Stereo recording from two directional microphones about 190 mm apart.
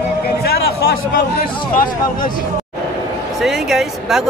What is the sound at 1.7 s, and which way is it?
Speech, 45° left (ahead or behind).